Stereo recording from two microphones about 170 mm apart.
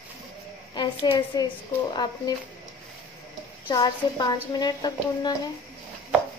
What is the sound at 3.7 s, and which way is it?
A woman's voice, 25° left (ahead or behind).